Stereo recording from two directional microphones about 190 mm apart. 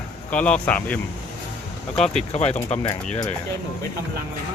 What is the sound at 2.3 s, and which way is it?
Speech, 35° left (ahead or behind).